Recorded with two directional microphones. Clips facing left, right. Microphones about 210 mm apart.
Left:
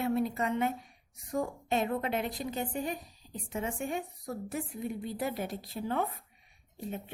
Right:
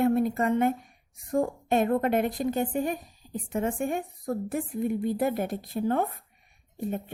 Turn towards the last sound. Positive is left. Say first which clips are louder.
# right 7 dB
turn(degrees=-50)  # may be behind; listen again after turning